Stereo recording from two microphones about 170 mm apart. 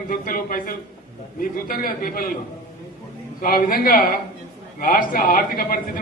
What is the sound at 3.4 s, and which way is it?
A man's voice, 60° left (ahead or behind).